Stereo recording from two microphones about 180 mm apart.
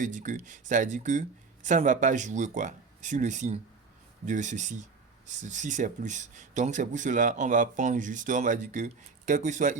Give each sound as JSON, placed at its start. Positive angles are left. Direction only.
{"t": 0.0, "sound": "speech", "side_deg": -45}